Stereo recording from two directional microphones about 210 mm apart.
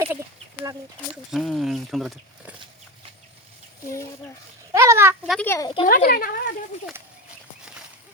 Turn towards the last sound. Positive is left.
turn(degrees=45)  # may be behind; listen again after turning